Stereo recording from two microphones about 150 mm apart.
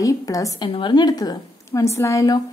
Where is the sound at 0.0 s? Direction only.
20° left (ahead or behind).